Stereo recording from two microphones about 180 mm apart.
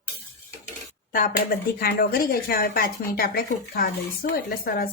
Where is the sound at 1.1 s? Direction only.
50° left (ahead or behind).